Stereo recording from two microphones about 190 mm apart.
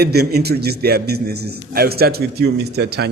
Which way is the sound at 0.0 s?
55° right (ahead or behind).